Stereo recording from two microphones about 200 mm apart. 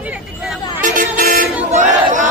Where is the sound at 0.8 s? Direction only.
40° right (ahead or behind).